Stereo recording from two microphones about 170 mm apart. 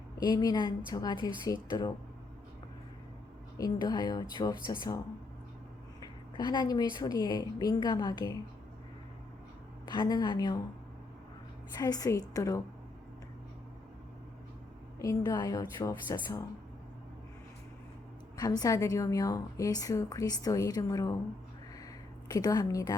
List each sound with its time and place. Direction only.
0.2 s a woman's voice: 25° left (ahead or behind)
3.6 s a woman's voice: 25° left (ahead or behind)
6.3 s a woman's voice: 25° left (ahead or behind)
9.8 s a woman's voice: 25° left (ahead or behind)
11.8 s a woman's voice: 20° left (ahead or behind)
14.9 s a woman's voice: 20° left (ahead or behind)
18.3 s a woman's voice: 20° left (ahead or behind)
22.3 s a woman's voice: 25° left (ahead or behind)